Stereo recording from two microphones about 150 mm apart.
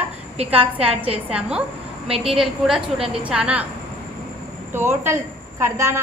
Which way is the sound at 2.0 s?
40° right (ahead or behind).